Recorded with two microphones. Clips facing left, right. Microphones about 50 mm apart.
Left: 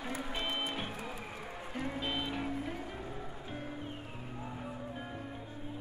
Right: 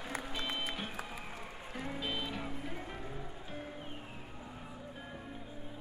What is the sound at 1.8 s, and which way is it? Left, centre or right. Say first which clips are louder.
Music: left 2 dB; centre.